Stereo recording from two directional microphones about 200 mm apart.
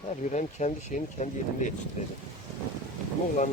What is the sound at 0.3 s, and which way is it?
Speech, 35° left (ahead or behind).